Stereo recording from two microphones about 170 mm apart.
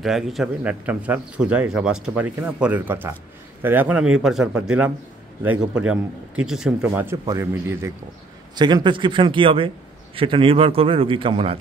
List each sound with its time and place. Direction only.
0.0 s a man's voice: centre (ahead or behind)
8.5 s a man's voice: 25° right (ahead or behind)